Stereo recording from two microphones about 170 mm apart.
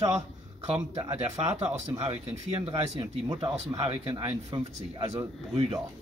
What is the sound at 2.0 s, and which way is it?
Speech, 35° right (ahead or behind).